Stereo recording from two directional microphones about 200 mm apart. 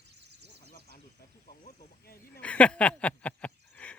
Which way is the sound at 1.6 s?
50° left (ahead or behind).